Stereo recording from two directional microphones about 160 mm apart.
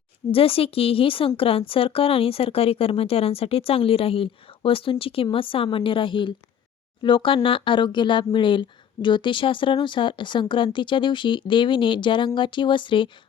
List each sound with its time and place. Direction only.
0.3 s speech: 35° left (ahead or behind)